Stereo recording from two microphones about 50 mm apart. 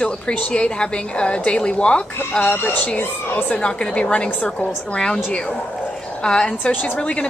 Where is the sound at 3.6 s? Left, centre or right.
Centre.